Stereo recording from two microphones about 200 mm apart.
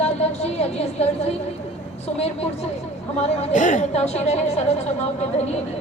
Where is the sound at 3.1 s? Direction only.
30° left (ahead or behind).